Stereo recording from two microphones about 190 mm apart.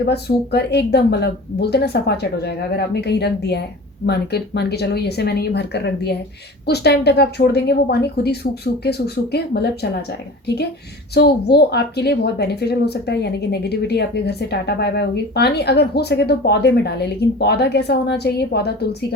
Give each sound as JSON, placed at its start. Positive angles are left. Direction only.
{"t": 0.0, "sound": "speech", "side_deg": 60}
{"t": 11.1, "sound": "speech", "side_deg": 60}